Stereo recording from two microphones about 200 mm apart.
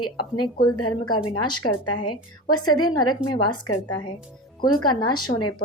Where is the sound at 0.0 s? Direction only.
25° left (ahead or behind).